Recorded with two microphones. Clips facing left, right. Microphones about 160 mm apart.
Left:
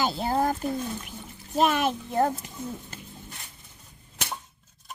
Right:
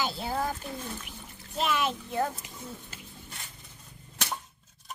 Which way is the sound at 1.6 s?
50° left (ahead or behind).